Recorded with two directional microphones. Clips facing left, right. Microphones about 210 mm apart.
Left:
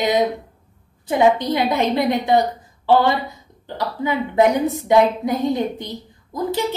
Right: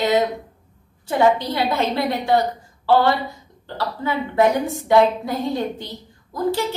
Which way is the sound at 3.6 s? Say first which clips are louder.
Left 2 dB; 15° left (ahead or behind).